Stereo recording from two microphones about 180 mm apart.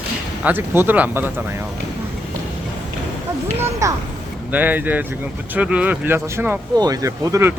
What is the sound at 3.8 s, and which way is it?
Speech, 15° right (ahead or behind).